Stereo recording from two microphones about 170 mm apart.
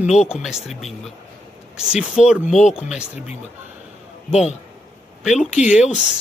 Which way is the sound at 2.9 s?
5° right (ahead or behind).